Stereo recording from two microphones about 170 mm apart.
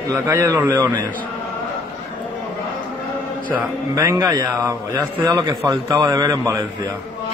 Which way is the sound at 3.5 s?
15° right (ahead or behind).